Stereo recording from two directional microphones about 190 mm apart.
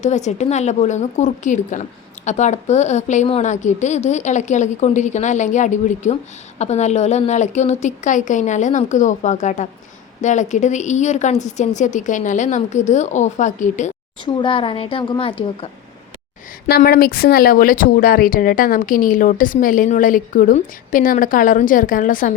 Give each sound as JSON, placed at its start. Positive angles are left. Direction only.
{"t": 0.0, "sound": "a woman's voice", "side_deg": 40}
{"t": 14.3, "sound": "a woman's voice", "side_deg": 25}
{"t": 16.6, "sound": "speech", "side_deg": 55}